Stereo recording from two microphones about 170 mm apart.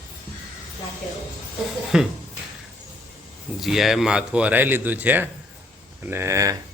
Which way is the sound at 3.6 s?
Centre (ahead or behind).